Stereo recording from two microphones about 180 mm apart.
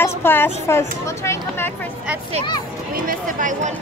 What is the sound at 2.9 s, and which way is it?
Speech, 50° right (ahead or behind).